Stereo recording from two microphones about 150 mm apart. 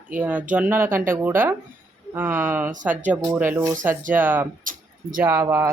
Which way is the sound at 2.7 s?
55° right (ahead or behind).